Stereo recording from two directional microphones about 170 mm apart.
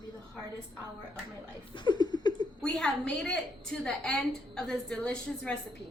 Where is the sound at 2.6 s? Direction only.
5° left (ahead or behind).